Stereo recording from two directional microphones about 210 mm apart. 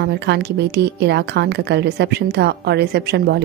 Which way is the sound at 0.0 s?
55° right (ahead or behind).